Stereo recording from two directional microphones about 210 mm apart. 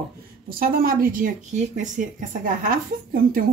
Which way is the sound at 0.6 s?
45° right (ahead or behind).